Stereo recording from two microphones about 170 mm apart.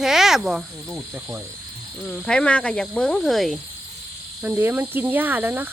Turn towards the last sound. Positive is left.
turn(degrees=-10)  # may be behind; listen again after turning